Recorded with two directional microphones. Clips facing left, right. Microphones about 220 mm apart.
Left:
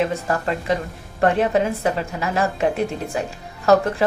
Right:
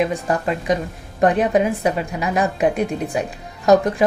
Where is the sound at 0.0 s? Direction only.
15° right (ahead or behind).